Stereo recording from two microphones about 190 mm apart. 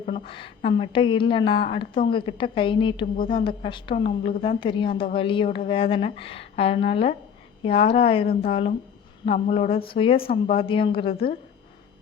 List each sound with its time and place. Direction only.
0.0 s a woman's voice: 30° left (ahead or behind)